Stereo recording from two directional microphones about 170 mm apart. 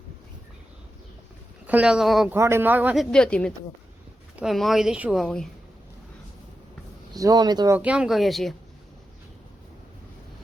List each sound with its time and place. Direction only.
1.6 s speech: 5° right (ahead or behind)
2.3 s speech: 15° right (ahead or behind); by 5.5 s centre (ahead or behind)
7.1 s speech: 20° right (ahead or behind)
7.8 s speech: 5° right (ahead or behind)